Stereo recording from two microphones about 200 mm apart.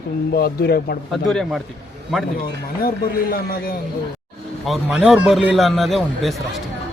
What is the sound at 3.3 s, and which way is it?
Speech, 45° left (ahead or behind).